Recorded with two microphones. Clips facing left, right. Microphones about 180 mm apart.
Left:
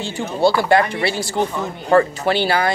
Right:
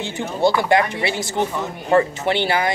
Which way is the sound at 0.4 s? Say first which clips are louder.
Left 2 dB; 20° right (ahead or behind).